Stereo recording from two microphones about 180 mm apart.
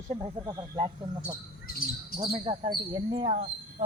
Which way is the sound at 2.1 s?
25° right (ahead or behind).